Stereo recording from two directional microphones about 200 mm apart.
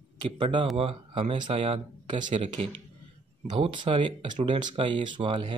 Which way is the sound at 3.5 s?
25° right (ahead or behind).